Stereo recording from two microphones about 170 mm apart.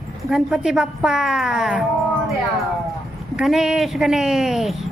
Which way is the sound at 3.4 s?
Centre (ahead or behind).